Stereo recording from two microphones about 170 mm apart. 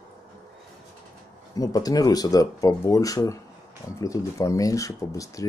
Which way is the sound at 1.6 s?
20° left (ahead or behind).